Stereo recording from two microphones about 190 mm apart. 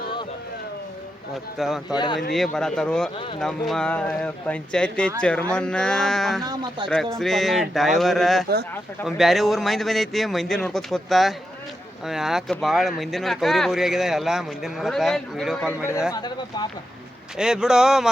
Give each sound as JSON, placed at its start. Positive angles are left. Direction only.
{"t": 1.5, "sound": "speech", "side_deg": 0}
{"t": 1.9, "sound": "speech", "side_deg": 25}
{"t": 2.3, "sound": "speech", "side_deg": 0}
{"t": 6.4, "sound": "speech", "side_deg": -20}
{"t": 6.8, "sound": "speech", "side_deg": 0}
{"t": 16.1, "sound": "speech", "side_deg": 25}
{"t": 17.3, "sound": "speech", "side_deg": -5}